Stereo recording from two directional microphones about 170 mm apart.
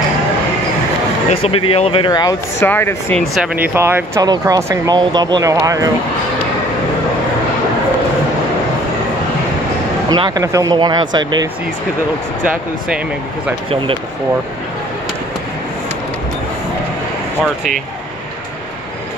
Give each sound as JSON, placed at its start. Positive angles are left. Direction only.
{"t": 1.3, "sound": "speech", "side_deg": 35}
{"t": 2.6, "sound": "speech", "side_deg": 10}
{"t": 3.3, "sound": "speech", "side_deg": -10}
{"t": 10.0, "sound": "speech", "side_deg": -25}